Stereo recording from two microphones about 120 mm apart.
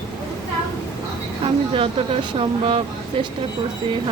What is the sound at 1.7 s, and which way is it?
Speech, 50° right (ahead or behind).